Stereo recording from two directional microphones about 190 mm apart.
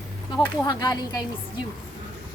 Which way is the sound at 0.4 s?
20° left (ahead or behind).